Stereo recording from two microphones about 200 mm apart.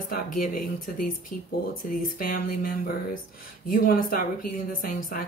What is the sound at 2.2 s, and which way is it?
Speech, 45° left (ahead or behind).